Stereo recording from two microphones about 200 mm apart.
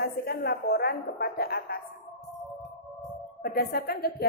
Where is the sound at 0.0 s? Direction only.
50° left (ahead or behind).